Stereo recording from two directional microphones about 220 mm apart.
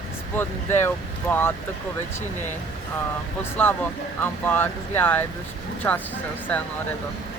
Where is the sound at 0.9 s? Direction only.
10° left (ahead or behind).